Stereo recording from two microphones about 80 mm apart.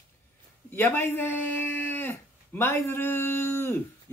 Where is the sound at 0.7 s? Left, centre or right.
Left.